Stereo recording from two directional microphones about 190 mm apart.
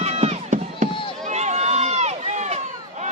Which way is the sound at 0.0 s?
35° right (ahead or behind).